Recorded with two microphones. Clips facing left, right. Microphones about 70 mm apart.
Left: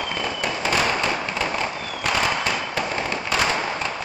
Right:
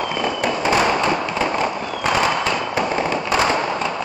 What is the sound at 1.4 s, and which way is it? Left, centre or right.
Fireworks, right.